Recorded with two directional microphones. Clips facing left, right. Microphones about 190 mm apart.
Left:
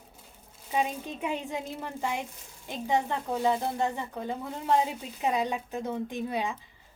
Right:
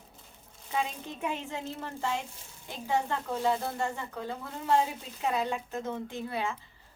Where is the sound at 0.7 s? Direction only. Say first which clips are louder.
Left 3 dB; 15° left (ahead or behind).